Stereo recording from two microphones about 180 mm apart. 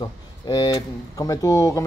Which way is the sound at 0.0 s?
20° left (ahead or behind).